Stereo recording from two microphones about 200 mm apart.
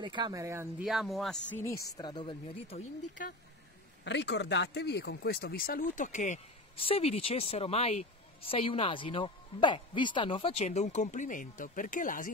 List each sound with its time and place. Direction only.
0.0 s speech: 20° right (ahead or behind)
0.8 s speech: centre (ahead or behind)
1.6 s speech: 15° left (ahead or behind)
4.0 s speech: 60° left (ahead or behind); by 12.3 s 40° left (ahead or behind)